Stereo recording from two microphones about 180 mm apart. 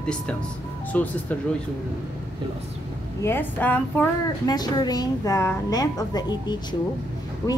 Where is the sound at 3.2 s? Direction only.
10° left (ahead or behind).